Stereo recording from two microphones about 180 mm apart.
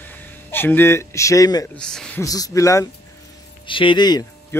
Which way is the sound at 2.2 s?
20° left (ahead or behind).